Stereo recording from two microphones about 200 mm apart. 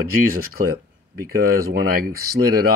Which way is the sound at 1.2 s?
50° right (ahead or behind).